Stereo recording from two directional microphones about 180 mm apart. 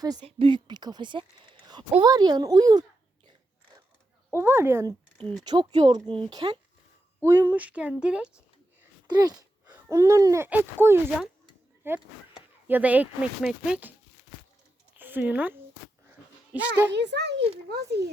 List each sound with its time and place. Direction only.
0.0 s speech: 20° right (ahead or behind)
4.3 s speech: 15° right (ahead or behind)
5.1 s speech: 5° left (ahead or behind)
5.5 s speech: 25° right (ahead or behind)
7.3 s speech: 10° right (ahead or behind)
9.0 s speech: 20° right (ahead or behind); by 13.9 s 5° right (ahead or behind)
14.9 s speech: 10° right (ahead or behind)
16.0 s a sound: 10° right (ahead or behind)
16.9 s a child's voice: 70° right (ahead or behind)